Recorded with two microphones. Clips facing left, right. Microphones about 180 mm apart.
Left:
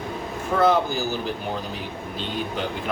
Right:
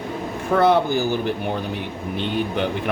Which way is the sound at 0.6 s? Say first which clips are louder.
Right 2 dB; 60° right (ahead or behind).